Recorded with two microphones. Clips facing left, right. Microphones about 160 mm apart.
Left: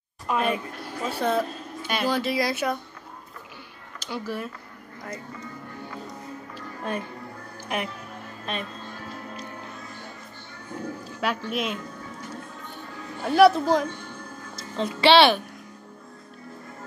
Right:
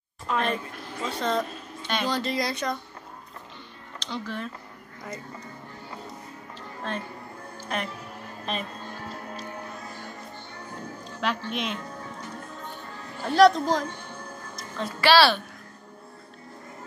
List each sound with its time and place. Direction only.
0.3 s a woman's voice: 10° left (ahead or behind)
4.0 s a woman's voice: 10° left (ahead or behind)
6.8 s a woman's voice: 10° left (ahead or behind)
8.5 s a woman's voice: centre (ahead or behind)
11.1 s a woman's voice: 5° left (ahead or behind)
13.2 s a woman's voice: 10° left (ahead or behind)
14.5 s music: 25° left (ahead or behind)